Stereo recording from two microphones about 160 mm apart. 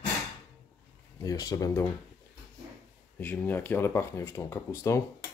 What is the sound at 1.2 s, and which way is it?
Speech, 25° left (ahead or behind).